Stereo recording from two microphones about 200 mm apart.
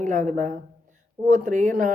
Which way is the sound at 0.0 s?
40° right (ahead or behind).